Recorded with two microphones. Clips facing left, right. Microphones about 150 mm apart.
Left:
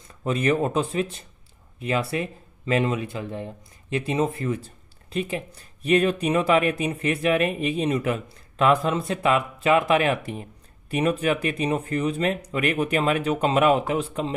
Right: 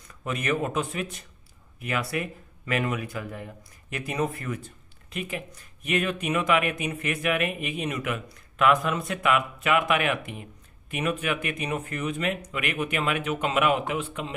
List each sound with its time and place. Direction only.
0.1 s speech: 30° left (ahead or behind)